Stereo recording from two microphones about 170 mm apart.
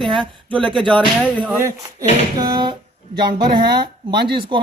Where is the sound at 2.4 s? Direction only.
25° right (ahead or behind).